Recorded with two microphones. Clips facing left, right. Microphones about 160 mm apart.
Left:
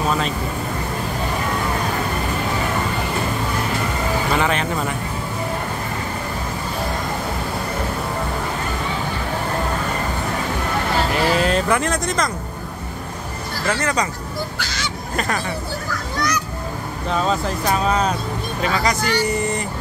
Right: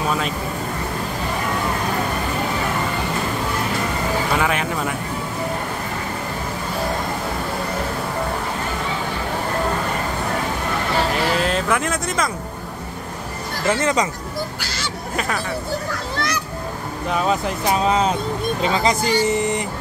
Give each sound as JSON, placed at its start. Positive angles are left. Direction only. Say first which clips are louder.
{"t": 4.4, "sound": "speech", "louder": "left 1 dB", "side_deg": -5}
{"t": 11.3, "sound": "speech", "louder": "left 2 dB", "side_deg": 0}
{"t": 13.7, "sound": "speech", "louder": "right 3 dB", "side_deg": -20}
{"t": 15.1, "sound": "speech", "louder": "left 1 dB", "side_deg": -5}
{"t": 17.1, "sound": "speech", "louder": "even", "side_deg": -10}